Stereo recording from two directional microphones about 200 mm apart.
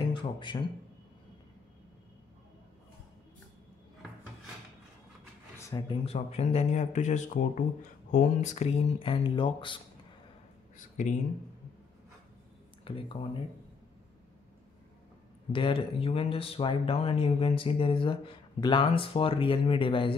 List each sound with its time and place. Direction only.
0.1 s speech: 25° left (ahead or behind)
5.6 s speech: 15° left (ahead or behind)
6.0 s speech: 30° left (ahead or behind)
12.8 s speech: 25° left (ahead or behind)
15.5 s speech: 25° left (ahead or behind)